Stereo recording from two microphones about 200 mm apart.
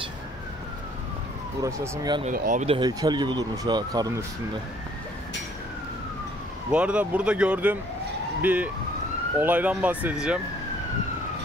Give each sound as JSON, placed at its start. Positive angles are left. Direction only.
{"t": 1.6, "sound": "speech", "side_deg": -20}
{"t": 2.2, "sound": "speech", "side_deg": -40}
{"t": 2.6, "sound": "speech", "side_deg": -30}
{"t": 6.7, "sound": "speech", "side_deg": -5}